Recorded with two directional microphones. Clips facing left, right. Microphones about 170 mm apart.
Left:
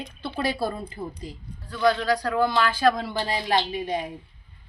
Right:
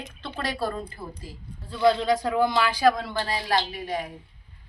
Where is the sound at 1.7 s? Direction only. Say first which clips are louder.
Right 1 dB; 25° right (ahead or behind).